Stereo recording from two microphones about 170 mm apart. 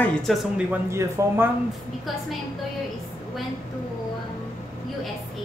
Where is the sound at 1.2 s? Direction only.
15° right (ahead or behind).